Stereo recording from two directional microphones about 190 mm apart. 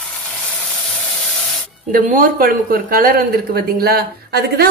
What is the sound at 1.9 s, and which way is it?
Speech, 50° right (ahead or behind).